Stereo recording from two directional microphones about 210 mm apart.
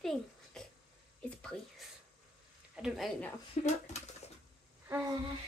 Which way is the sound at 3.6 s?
30° left (ahead or behind).